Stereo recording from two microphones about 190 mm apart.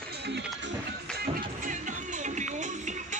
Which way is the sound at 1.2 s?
40° right (ahead or behind).